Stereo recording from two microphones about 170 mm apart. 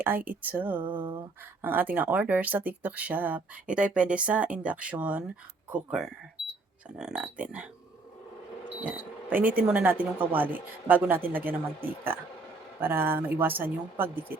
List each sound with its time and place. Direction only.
0.0 s speech: 10° right (ahead or behind)
0.8 s a sound: 30° right (ahead or behind)
1.6 s speech: 10° right (ahead or behind)
8.8 s speech: 10° right (ahead or behind)